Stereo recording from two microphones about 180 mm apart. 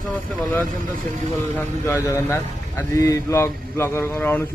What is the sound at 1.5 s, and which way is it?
A man's voice, 15° left (ahead or behind).